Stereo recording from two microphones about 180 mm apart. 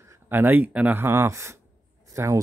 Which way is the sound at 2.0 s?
15° right (ahead or behind).